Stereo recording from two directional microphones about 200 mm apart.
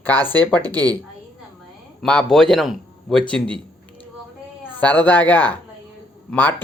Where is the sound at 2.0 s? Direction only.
5° left (ahead or behind).